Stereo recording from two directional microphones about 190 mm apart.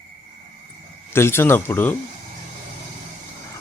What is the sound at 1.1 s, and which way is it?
Speech, 15° left (ahead or behind).